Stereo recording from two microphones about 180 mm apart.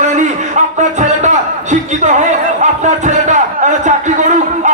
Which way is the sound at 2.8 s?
40° right (ahead or behind).